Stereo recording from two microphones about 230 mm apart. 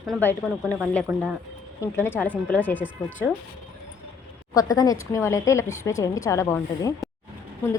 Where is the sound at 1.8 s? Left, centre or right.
Centre.